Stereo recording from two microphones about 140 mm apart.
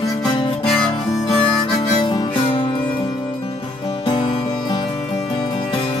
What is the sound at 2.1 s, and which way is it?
Music, 35° left (ahead or behind).